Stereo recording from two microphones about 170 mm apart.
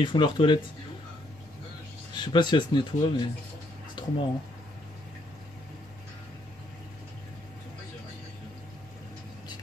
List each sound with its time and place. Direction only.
0.0 s speech: 30° left (ahead or behind)
2.1 s speech: 25° left (ahead or behind)
4.0 s a sound: 25° left (ahead or behind)